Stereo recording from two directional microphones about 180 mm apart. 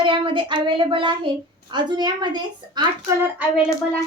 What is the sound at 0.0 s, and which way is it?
A woman's voice, 30° right (ahead or behind).